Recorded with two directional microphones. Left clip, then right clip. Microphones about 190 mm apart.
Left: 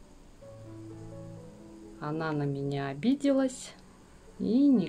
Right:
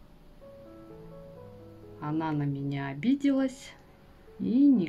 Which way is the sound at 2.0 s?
20° left (ahead or behind).